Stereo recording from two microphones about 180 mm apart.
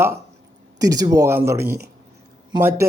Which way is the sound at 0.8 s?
20° right (ahead or behind).